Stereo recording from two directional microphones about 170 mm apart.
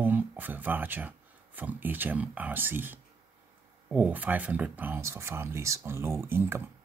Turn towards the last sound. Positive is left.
turn(degrees=-15)  # may be behind; listen again after turning